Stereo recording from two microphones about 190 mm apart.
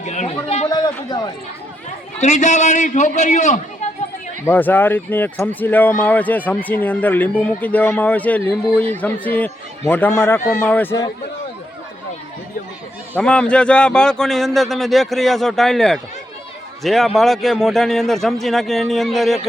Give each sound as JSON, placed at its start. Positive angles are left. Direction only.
{"t": 0.0, "sound": "a man's voice", "side_deg": 40}
{"t": 0.7, "sound": "a man's voice", "side_deg": 20}
{"t": 2.2, "sound": "a man's voice", "side_deg": 40}
{"t": 4.4, "sound": "speech", "side_deg": 10}
{"t": 13.1, "sound": "a man's voice", "side_deg": 5}